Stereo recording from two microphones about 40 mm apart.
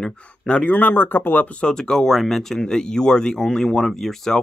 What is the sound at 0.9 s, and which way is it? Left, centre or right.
Speech, left.